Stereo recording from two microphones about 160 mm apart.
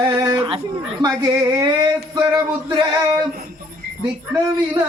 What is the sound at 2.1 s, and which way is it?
Music, 25° right (ahead or behind).